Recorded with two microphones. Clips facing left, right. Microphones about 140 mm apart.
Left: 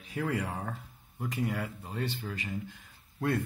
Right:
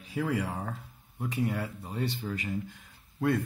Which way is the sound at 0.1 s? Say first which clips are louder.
Right 2 dB; 10° right (ahead or behind).